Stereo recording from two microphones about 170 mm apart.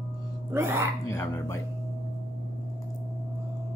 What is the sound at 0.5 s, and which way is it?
Speech, 15° right (ahead or behind).